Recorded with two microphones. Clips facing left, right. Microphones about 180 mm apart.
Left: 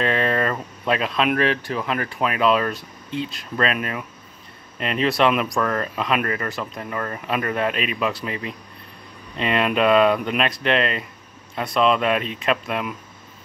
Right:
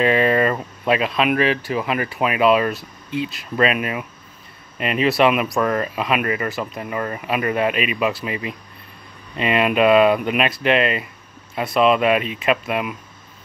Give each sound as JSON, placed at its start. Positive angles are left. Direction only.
{"t": 0.0, "sound": "speech", "side_deg": -5}